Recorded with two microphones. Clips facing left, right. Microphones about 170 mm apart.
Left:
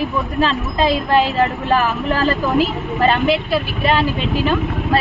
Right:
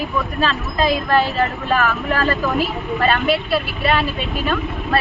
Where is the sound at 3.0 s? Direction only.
15° left (ahead or behind).